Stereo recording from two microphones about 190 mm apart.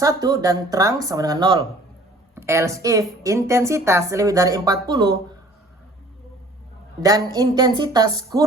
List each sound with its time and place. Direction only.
0.0 s a woman's voice: 20° right (ahead or behind)
2.3 s a woman's voice: 15° right (ahead or behind)
7.0 s a woman's voice: 20° right (ahead or behind)